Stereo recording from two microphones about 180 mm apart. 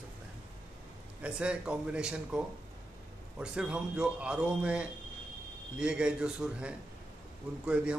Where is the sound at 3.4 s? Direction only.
5° right (ahead or behind).